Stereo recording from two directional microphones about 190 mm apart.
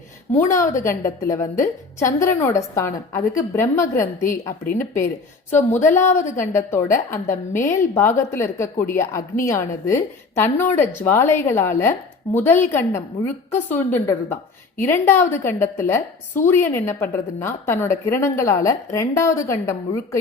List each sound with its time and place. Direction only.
0.3 s a woman's voice: 15° left (ahead or behind)